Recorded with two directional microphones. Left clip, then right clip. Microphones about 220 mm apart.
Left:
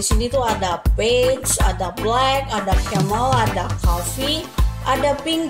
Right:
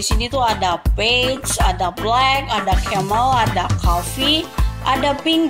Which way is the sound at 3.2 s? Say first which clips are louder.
Right 1 dB; 15° right (ahead or behind).